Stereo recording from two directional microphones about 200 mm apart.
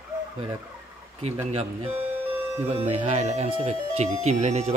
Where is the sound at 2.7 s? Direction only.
35° right (ahead or behind).